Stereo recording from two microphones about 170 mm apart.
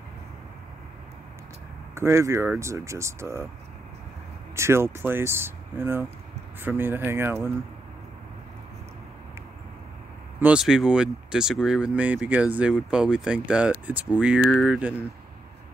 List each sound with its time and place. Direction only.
2.0 s speech: 15° right (ahead or behind)
4.6 s speech: 15° right (ahead or behind)
10.4 s speech: 5° right (ahead or behind)